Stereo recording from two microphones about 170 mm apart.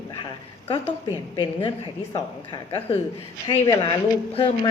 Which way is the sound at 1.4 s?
30° left (ahead or behind).